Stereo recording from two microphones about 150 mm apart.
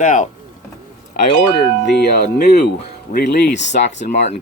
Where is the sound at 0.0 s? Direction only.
55° left (ahead or behind).